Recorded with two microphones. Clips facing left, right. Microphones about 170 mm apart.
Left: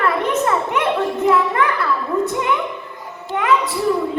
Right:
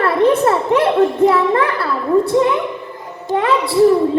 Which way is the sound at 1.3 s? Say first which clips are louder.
Right 2 dB; 30° right (ahead or behind).